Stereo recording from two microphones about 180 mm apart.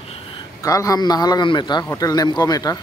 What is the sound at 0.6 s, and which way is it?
Speech, 20° left (ahead or behind).